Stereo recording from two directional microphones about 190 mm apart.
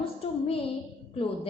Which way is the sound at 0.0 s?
30° left (ahead or behind).